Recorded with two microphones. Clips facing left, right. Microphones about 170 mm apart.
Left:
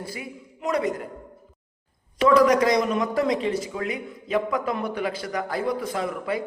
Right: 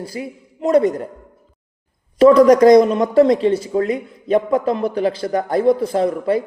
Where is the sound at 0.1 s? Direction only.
30° right (ahead or behind).